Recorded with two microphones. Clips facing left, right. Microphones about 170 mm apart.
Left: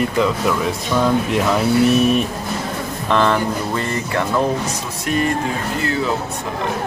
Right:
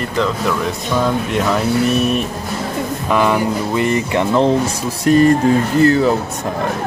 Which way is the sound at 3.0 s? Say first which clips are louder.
Right 1 dB; 10° right (ahead or behind).